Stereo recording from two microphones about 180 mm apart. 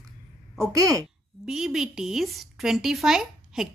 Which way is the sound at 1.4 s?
5° right (ahead or behind).